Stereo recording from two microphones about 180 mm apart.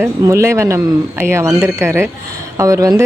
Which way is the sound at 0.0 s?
15° right (ahead or behind).